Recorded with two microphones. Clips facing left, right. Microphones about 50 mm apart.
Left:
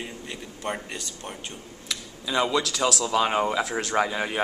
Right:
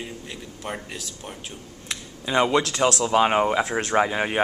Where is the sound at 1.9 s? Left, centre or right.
Right.